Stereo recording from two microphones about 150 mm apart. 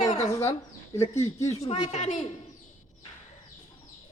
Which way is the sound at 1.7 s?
50° left (ahead or behind).